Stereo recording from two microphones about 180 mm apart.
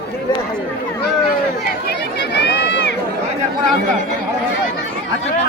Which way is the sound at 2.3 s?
70° left (ahead or behind).